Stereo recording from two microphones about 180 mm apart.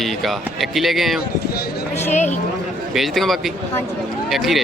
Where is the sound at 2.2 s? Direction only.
40° left (ahead or behind).